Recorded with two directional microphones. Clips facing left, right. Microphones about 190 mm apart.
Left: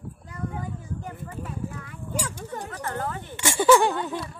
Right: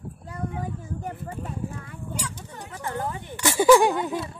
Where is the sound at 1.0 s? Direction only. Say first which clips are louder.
Right 2 dB; 30° right (ahead or behind).